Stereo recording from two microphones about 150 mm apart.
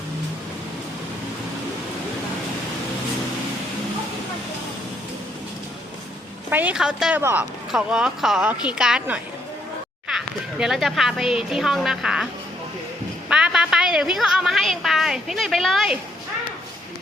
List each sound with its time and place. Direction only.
6.5 s speech: 10° right (ahead or behind)
7.2 s speech: 15° right (ahead or behind)
7.7 s a woman's voice: 5° right (ahead or behind)